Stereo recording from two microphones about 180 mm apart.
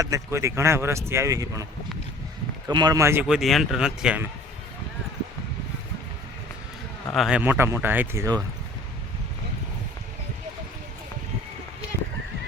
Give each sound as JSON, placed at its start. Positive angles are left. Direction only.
{"t": 0.0, "sound": "speech", "side_deg": -15}
{"t": 2.6, "sound": "speech", "side_deg": -20}
{"t": 3.2, "sound": "speech", "side_deg": 0}
{"t": 7.1, "sound": "speech", "side_deg": 0}